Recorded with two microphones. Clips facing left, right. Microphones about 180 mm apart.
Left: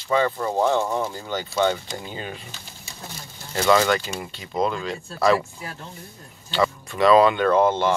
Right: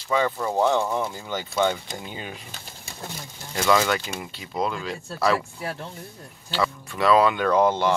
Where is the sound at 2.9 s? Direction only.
55° right (ahead or behind).